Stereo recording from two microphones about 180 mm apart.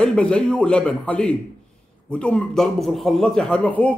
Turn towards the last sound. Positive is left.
turn(degrees=10)  # may be behind; listen again after turning